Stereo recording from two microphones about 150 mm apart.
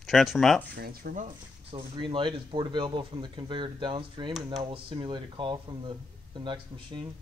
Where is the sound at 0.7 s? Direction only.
90° right; by 1.3 s 70° right (ahead or behind).